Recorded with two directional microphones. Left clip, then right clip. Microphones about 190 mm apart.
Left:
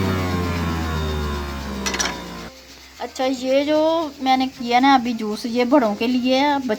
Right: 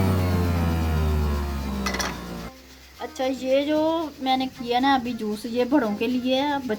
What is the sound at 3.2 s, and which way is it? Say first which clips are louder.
Speech: left 3 dB; 40° left (ahead or behind).